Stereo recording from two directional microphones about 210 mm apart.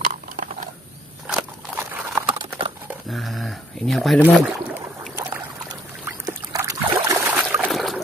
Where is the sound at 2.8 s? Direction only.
Centre (ahead or behind).